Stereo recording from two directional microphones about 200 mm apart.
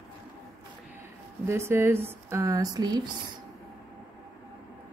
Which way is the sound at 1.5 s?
10° right (ahead or behind).